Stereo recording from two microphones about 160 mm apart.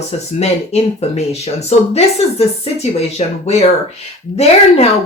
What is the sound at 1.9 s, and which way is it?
A woman's voice, 40° left (ahead or behind).